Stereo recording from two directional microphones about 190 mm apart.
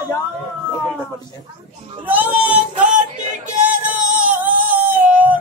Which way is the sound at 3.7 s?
10° right (ahead or behind).